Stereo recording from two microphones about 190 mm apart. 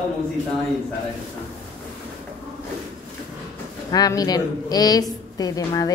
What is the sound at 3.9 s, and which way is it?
A woman's voice, 20° left (ahead or behind).